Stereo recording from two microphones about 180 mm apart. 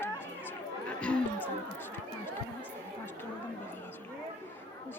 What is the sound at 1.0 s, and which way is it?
Music, 5° left (ahead or behind).